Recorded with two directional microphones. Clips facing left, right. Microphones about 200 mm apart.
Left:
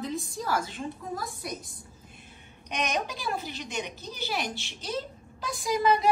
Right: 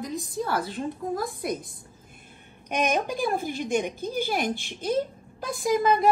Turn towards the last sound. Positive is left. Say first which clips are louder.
# right 3 dB
turn(degrees=-50)  # may be behind; listen again after turning